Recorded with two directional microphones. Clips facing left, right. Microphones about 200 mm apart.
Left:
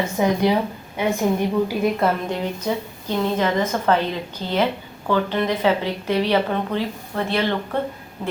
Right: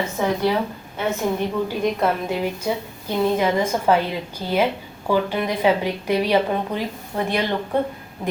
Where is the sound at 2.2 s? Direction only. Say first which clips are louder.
Right 1 dB; 10° right (ahead or behind).